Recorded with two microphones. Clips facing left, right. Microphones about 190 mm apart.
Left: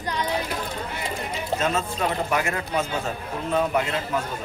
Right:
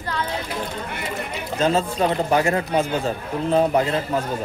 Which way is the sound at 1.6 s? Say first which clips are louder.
Right 7 dB; 30° right (ahead or behind).